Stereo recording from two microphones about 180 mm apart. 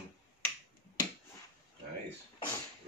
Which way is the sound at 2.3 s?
20° left (ahead or behind).